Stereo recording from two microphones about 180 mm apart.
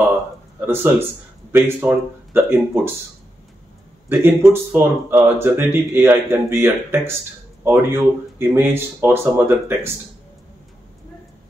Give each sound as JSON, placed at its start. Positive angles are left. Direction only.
{"t": 0.6, "sound": "speech", "side_deg": -10}
{"t": 4.1, "sound": "speech", "side_deg": -15}